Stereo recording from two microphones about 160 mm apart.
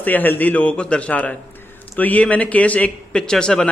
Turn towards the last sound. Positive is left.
turn(degrees=5)  # may be behind; listen again after turning